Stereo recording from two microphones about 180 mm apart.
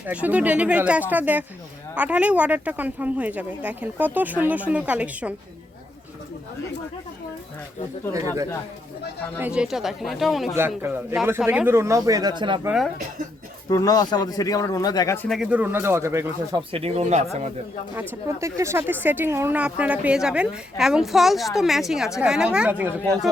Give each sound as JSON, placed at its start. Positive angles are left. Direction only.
{"t": 0.0, "sound": "speech", "side_deg": -10}
{"t": 9.4, "sound": "speech", "side_deg": -5}
{"t": 10.8, "sound": "speech", "side_deg": -10}
{"t": 12.6, "sound": "speech", "side_deg": 0}
{"t": 13.7, "sound": "speech", "side_deg": 20}
{"t": 15.3, "sound": "speech", "side_deg": -5}
{"t": 16.7, "sound": "speech", "side_deg": -35}
{"t": 18.1, "sound": "speech", "side_deg": -15}